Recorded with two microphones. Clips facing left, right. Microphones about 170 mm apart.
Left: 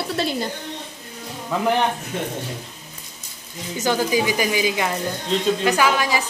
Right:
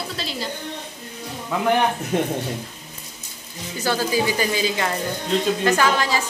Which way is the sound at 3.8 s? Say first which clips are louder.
Left 1 dB; 15° left (ahead or behind).